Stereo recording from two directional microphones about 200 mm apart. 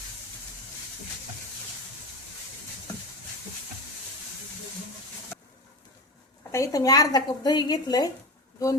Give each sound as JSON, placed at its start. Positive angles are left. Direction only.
{"t": 6.5, "sound": "a woman's voice", "side_deg": 15}